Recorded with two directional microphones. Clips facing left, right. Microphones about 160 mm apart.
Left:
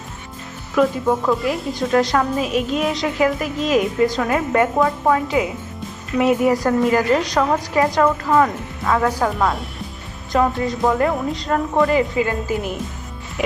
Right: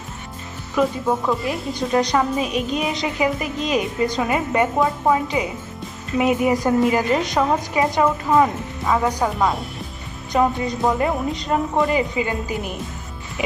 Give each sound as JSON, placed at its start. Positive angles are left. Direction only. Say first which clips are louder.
{"t": 0.8, "sound": "a woman's voice", "louder": "left 3 dB", "side_deg": 0}